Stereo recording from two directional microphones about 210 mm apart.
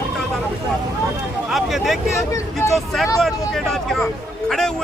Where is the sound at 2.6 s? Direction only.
10° left (ahead or behind).